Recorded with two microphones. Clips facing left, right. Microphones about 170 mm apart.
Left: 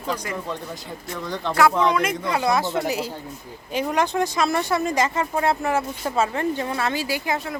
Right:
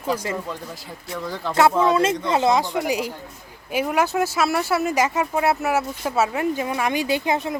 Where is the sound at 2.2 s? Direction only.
25° right (ahead or behind).